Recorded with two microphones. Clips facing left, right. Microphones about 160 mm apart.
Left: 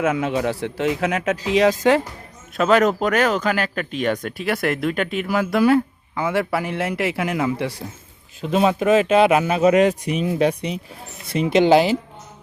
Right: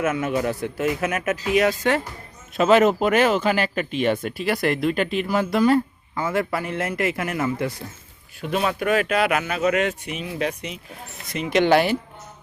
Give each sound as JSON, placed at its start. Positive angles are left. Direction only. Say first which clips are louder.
{"t": 0.0, "sound": "a man's voice", "louder": "left 2 dB", "side_deg": 20}
{"t": 2.6, "sound": "speech", "louder": "even", "side_deg": -5}
{"t": 6.7, "sound": "speech", "louder": "left 1 dB", "side_deg": 75}
{"t": 7.2, "sound": "a man's voice", "louder": "left 2 dB", "side_deg": 15}
{"t": 8.4, "sound": "speech", "louder": "left 5 dB", "side_deg": 25}